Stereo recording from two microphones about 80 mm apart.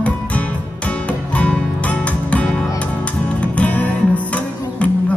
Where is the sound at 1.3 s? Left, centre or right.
Centre.